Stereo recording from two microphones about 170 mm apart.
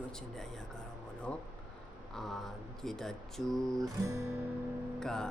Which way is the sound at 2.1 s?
Centre (ahead or behind).